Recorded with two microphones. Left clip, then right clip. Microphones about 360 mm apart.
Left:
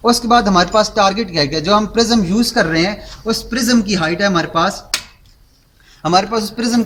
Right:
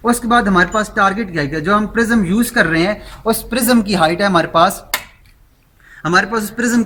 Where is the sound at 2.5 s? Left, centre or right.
Centre.